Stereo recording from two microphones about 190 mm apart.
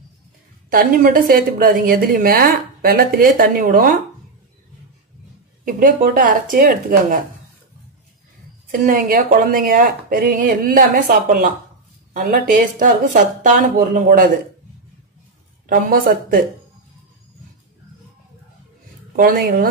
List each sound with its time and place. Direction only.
0.7 s a woman's voice: 50° right (ahead or behind)
5.7 s a woman's voice: 45° right (ahead or behind)
8.8 s a woman's voice: 45° right (ahead or behind)
15.6 s a woman's voice: 50° right (ahead or behind)
19.1 s a woman's voice: 50° right (ahead or behind)